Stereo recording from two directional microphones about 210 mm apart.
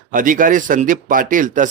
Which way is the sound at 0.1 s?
40° right (ahead or behind).